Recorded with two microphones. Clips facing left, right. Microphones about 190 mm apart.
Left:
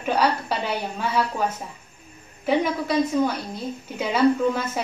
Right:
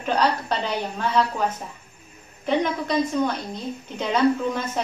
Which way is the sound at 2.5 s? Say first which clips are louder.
Left 1 dB; 5° left (ahead or behind).